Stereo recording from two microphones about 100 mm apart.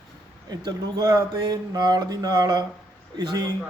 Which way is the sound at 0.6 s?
40° right (ahead or behind).